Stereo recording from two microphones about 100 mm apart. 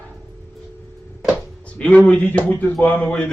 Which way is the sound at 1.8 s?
15° left (ahead or behind).